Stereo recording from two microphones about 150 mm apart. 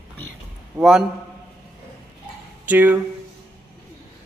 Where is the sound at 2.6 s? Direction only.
10° right (ahead or behind).